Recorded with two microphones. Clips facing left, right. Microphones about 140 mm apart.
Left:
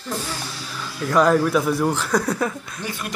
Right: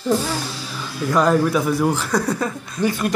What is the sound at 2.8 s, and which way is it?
Speech, 45° right (ahead or behind).